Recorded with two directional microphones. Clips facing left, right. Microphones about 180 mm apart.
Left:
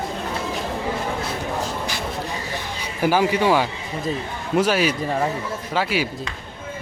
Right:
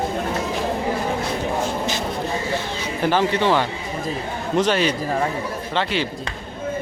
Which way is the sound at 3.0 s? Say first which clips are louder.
Left 1 dB; 10° left (ahead or behind).